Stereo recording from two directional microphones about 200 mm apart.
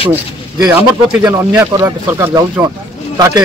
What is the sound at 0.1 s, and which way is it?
A man's voice, 10° right (ahead or behind).